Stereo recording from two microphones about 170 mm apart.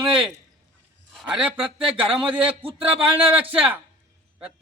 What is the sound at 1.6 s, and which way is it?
Speech, 30° right (ahead or behind).